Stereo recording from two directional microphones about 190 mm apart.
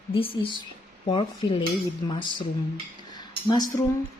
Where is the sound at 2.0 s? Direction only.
25° left (ahead or behind).